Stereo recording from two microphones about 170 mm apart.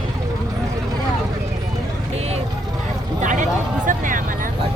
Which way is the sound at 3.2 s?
50° right (ahead or behind).